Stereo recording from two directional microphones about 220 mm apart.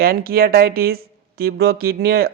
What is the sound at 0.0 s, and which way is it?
A man's voice, 45° right (ahead or behind).